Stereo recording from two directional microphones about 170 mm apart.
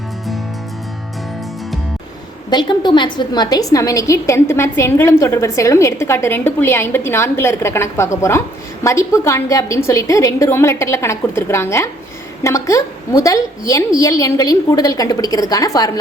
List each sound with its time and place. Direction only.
2.5 s a woman's voice: 25° left (ahead or behind)